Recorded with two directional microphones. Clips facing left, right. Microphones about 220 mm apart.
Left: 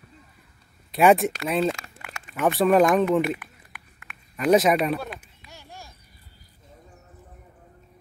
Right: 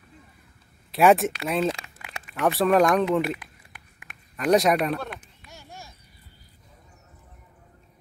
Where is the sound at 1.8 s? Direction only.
35° right (ahead or behind).